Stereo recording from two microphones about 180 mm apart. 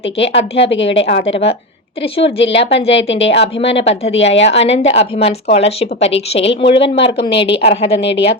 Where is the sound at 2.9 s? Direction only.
85° left.